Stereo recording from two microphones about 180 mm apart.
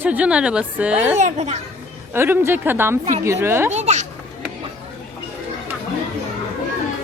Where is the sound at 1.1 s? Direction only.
40° right (ahead or behind).